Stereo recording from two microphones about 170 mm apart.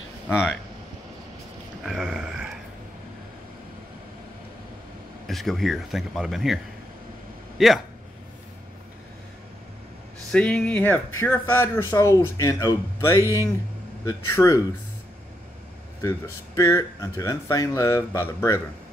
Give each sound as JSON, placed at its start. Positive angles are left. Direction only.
{"t": 1.8, "sound": "a sound", "side_deg": -5}
{"t": 5.2, "sound": "a man's voice", "side_deg": 0}
{"t": 10.3, "sound": "speech", "side_deg": 5}
{"t": 16.0, "sound": "speech", "side_deg": 15}